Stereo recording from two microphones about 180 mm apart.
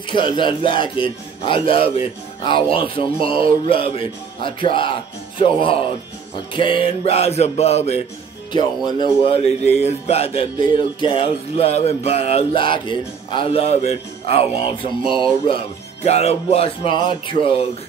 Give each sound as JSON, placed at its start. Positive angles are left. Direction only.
{"t": 0.1, "sound": "a man's voice", "side_deg": 25}
{"t": 8.5, "sound": "speech", "side_deg": 25}